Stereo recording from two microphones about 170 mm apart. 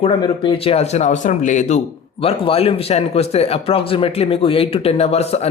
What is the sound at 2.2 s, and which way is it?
Speech, 35° left (ahead or behind).